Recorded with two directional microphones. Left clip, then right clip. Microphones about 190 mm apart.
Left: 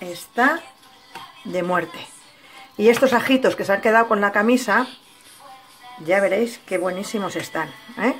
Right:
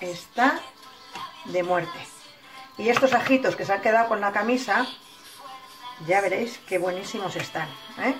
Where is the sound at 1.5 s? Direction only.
55° left (ahead or behind).